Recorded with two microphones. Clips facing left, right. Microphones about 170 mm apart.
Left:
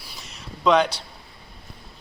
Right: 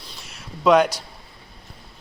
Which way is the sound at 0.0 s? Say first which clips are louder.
Even; centre (ahead or behind).